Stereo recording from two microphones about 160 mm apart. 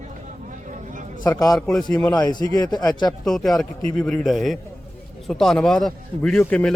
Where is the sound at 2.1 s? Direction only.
25° left (ahead or behind).